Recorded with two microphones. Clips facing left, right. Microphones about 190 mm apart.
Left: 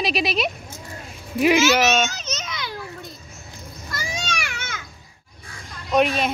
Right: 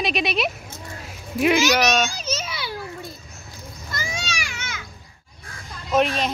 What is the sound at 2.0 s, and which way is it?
Children playing, 10° right (ahead or behind).